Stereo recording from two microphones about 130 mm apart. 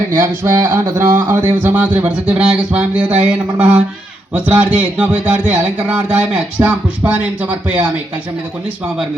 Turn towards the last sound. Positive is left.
turn(degrees=-10)  # may be behind; listen again after turning